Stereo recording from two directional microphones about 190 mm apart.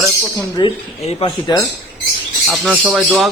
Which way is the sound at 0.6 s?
25° left (ahead or behind).